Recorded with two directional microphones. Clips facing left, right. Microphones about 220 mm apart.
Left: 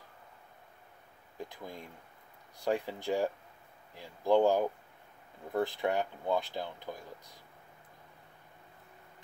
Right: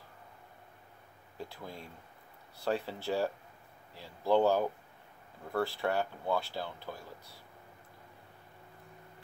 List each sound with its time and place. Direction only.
1.4 s speech: 15° left (ahead or behind)